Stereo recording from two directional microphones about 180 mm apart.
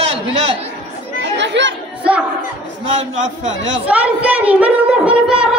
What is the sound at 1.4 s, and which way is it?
Chatter, 85° right.